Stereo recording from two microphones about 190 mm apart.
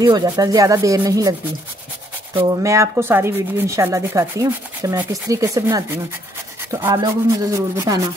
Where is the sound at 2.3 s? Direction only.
15° right (ahead or behind).